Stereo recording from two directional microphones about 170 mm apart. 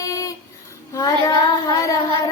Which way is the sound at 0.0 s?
20° left (ahead or behind).